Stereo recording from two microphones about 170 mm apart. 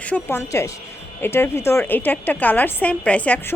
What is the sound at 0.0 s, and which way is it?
A woman's voice, 10° left (ahead or behind).